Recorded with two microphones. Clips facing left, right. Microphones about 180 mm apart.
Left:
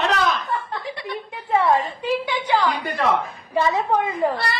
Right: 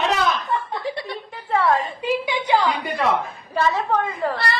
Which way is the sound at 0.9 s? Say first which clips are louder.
Right 4 dB; 35° right (ahead or behind).